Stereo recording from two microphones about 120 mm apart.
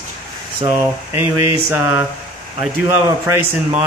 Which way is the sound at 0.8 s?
20° right (ahead or behind).